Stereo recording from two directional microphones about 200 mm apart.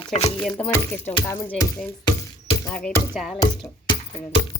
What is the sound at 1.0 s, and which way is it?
Speech, 25° left (ahead or behind).